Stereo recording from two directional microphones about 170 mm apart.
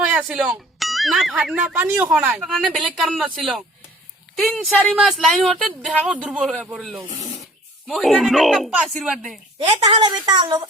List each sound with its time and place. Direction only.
0.0 s speech: 5° right (ahead or behind)
2.9 s speech: 5° left (ahead or behind)
7.1 s speech: 40° left (ahead or behind)
7.9 s speech: centre (ahead or behind)
9.6 s a woman's voice: 30° right (ahead or behind)